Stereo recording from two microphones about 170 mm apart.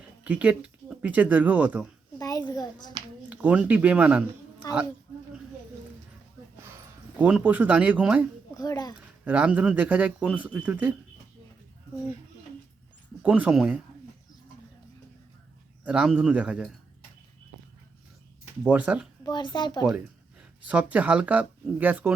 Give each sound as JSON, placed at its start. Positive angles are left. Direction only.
{"t": 0.3, "sound": "speech", "side_deg": -10}
{"t": 2.1, "sound": "a child's voice", "side_deg": 20}
{"t": 3.2, "sound": "speech", "side_deg": -10}
{"t": 4.6, "sound": "speech", "side_deg": 20}
{"t": 7.2, "sound": "speech", "side_deg": -10}
{"t": 8.5, "sound": "speech", "side_deg": 25}
{"t": 9.2, "sound": "speech", "side_deg": -10}
{"t": 13.2, "sound": "speech", "side_deg": -10}
{"t": 15.8, "sound": "speech", "side_deg": -5}
{"t": 18.6, "sound": "speech", "side_deg": -10}
{"t": 19.2, "sound": "speech", "side_deg": 25}
{"t": 20.7, "sound": "speech", "side_deg": -10}